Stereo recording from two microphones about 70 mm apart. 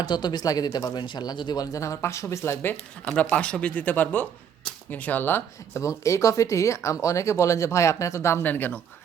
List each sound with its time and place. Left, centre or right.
0.0 s speech: left
1.7 s speech: left
3.1 s speech: centre
5.8 s speech: left
8.4 s speech: left